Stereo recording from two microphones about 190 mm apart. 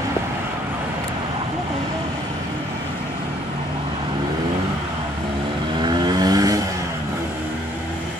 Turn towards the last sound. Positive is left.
turn(degrees=-20)  # may be behind; listen again after turning